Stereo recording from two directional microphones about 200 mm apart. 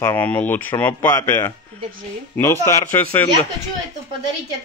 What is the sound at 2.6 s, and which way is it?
Speech, 10° left (ahead or behind).